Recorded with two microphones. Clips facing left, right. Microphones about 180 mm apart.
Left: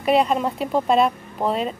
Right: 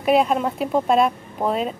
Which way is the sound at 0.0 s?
Centre (ahead or behind).